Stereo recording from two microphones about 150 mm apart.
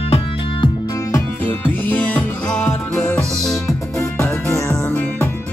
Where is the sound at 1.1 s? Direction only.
20° left (ahead or behind).